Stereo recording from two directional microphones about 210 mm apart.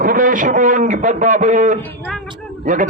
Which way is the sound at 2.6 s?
35° right (ahead or behind).